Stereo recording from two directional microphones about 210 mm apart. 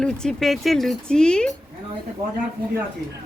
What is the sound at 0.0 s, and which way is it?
Speech, 5° left (ahead or behind).